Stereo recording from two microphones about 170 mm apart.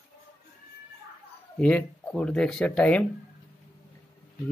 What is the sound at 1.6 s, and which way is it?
Speech, 5° left (ahead or behind).